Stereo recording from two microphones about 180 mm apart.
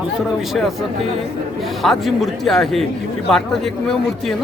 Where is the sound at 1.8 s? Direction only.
Centre (ahead or behind).